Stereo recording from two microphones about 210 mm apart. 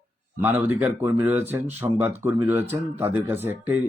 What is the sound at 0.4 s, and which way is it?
Speech, 10° right (ahead or behind).